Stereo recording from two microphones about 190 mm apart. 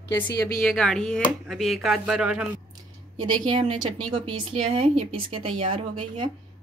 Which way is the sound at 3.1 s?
25° right (ahead or behind).